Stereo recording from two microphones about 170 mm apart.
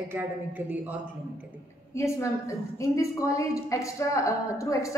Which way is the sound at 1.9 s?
15° left (ahead or behind).